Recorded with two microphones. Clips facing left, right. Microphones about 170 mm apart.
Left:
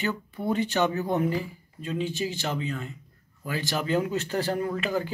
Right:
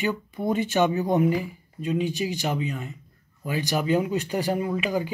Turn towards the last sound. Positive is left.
turn(degrees=-15)  # may be behind; listen again after turning